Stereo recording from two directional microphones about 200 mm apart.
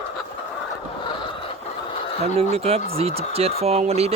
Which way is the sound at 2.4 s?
30° right (ahead or behind).